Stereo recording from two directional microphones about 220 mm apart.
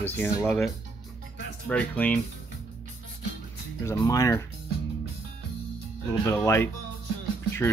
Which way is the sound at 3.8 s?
15° left (ahead or behind).